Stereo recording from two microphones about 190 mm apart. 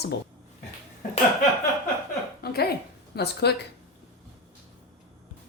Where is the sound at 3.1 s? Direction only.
60° left (ahead or behind).